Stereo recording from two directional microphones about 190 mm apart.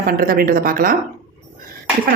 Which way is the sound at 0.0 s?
50° right (ahead or behind).